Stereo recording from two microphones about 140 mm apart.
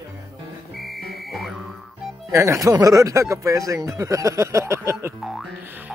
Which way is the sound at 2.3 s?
20° right (ahead or behind).